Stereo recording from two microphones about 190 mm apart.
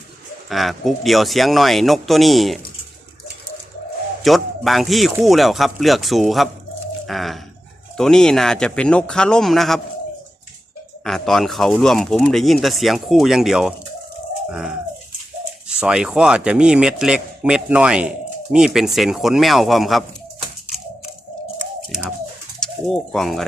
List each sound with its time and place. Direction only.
0.4 s speech: centre (ahead or behind)
4.2 s speech: centre (ahead or behind)
7.1 s bird: centre (ahead or behind)
7.9 s speech: centre (ahead or behind)
11.0 s speech: centre (ahead or behind)
15.6 s speech: 5° right (ahead or behind)
22.6 s speech: centre (ahead or behind)